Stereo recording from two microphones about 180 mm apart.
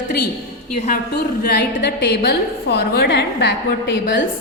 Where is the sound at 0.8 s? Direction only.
55° left (ahead or behind); by 3.5 s 70° left (ahead or behind).